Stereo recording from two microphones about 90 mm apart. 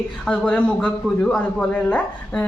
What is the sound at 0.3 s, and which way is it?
A woman's voice, 10° left (ahead or behind).